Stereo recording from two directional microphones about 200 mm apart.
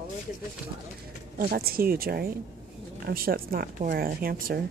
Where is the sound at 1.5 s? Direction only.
50° right (ahead or behind).